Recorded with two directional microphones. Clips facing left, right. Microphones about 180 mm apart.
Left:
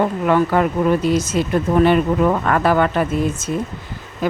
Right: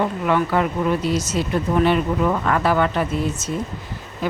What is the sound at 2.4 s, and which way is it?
Speech, 50° left (ahead or behind).